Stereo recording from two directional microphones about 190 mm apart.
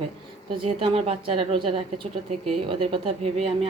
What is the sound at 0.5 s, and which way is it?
A woman's voice, 30° right (ahead or behind).